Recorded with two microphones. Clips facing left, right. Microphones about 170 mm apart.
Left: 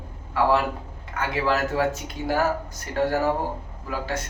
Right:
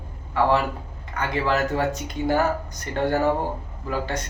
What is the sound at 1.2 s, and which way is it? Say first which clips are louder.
Speech: right 1 dB; 5° left (ahead or behind).